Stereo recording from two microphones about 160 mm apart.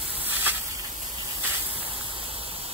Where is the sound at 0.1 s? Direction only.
10° right (ahead or behind).